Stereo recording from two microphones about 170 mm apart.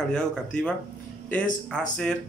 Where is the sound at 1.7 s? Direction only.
5° left (ahead or behind).